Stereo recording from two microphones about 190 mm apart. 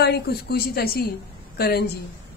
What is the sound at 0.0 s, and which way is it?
A woman's voice, 55° left (ahead or behind).